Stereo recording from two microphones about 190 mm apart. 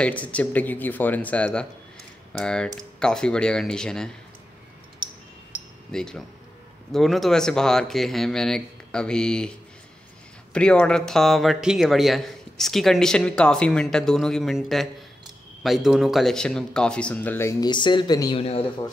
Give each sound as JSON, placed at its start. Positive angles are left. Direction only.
{"t": 0.0, "sound": "speech", "side_deg": 5}
{"t": 5.9, "sound": "speech", "side_deg": 5}
{"t": 10.5, "sound": "speech", "side_deg": 5}
{"t": 18.4, "sound": "a man's voice", "side_deg": 35}